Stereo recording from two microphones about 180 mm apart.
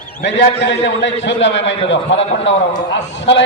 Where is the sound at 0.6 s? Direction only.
70° left (ahead or behind).